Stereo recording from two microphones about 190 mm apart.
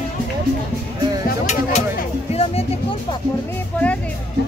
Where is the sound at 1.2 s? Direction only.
35° left (ahead or behind).